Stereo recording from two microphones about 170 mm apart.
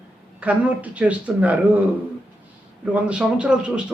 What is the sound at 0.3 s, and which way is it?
A man's voice, 10° right (ahead or behind).